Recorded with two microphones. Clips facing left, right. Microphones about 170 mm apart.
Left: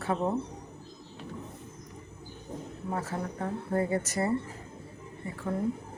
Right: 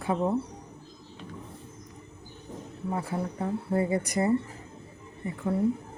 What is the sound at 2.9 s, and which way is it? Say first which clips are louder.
Speech: right 2 dB; 10° right (ahead or behind).